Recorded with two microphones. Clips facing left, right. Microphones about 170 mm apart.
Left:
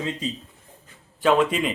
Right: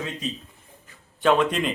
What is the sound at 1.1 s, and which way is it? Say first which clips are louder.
Speech: left 1 dB; 5° left (ahead or behind).